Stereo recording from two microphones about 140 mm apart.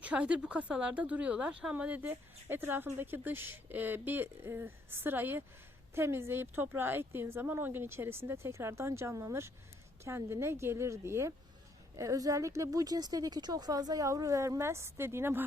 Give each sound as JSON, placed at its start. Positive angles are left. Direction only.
{"t": 0.0, "sound": "speech", "side_deg": -10}